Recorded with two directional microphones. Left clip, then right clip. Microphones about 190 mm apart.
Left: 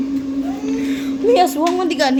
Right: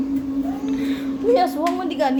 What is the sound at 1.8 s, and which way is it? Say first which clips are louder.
Speech: left 4 dB; 25° left (ahead or behind).